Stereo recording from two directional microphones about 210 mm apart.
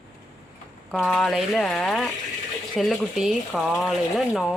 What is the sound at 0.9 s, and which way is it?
A woman's voice, centre (ahead or behind).